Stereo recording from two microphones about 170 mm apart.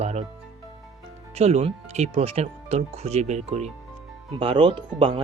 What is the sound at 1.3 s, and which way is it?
Speech, 40° right (ahead or behind).